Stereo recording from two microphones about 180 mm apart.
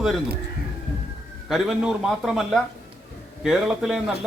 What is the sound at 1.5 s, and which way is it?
A man's voice, centre (ahead or behind).